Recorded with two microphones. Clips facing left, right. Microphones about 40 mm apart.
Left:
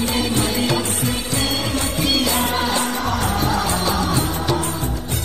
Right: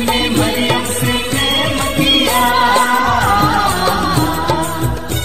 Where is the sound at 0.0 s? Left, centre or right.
Right.